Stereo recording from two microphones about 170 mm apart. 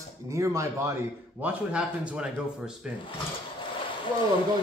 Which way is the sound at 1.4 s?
5° right (ahead or behind).